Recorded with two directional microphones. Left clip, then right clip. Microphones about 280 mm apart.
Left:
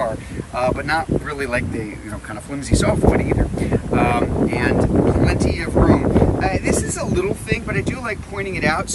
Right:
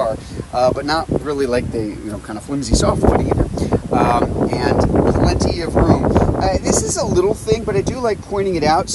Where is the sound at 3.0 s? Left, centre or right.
Centre.